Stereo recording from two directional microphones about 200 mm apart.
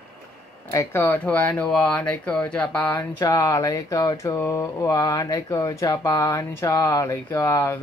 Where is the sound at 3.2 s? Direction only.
20° left (ahead or behind).